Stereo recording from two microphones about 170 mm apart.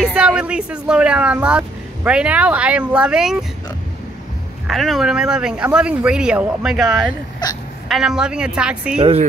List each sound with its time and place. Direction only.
0.0 s speech: 5° right (ahead or behind)
4.6 s speech: centre (ahead or behind)
7.4 s speech: 25° left (ahead or behind)
7.9 s speech: 5° right (ahead or behind)